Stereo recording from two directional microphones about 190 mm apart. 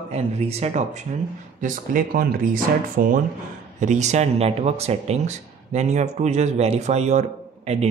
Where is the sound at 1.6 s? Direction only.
50° right (ahead or behind).